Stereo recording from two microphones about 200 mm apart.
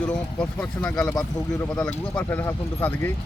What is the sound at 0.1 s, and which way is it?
Speech, 5° left (ahead or behind).